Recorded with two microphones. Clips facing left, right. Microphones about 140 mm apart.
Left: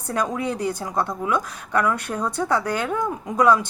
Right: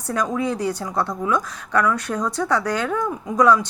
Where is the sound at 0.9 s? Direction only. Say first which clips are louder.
Right 1 dB; 15° left (ahead or behind).